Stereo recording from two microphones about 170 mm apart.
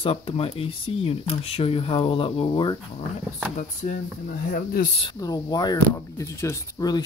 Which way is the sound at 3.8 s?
55° left (ahead or behind).